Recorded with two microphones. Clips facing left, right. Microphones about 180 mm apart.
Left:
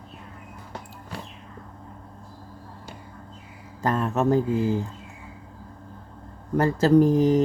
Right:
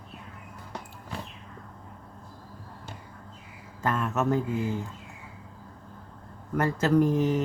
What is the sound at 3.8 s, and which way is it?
Speech, 35° left (ahead or behind).